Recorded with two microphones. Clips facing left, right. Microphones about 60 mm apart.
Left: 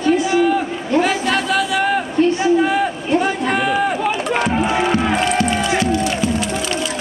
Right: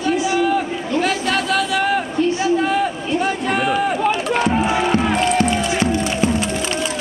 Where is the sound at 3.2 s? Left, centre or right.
Centre.